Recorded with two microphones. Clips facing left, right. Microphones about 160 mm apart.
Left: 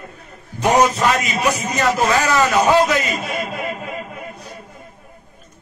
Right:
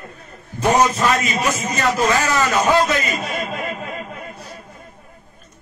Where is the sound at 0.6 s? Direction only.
15° left (ahead or behind).